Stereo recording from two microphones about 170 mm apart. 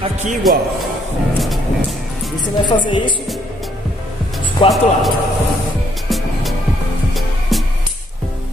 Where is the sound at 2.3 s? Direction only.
30° left (ahead or behind).